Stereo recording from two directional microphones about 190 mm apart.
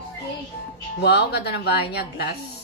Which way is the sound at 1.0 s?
60° left (ahead or behind).